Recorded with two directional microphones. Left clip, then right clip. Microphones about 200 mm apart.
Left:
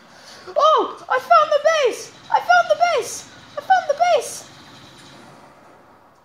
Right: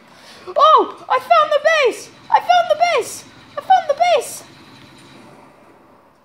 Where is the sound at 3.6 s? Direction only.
15° right (ahead or behind).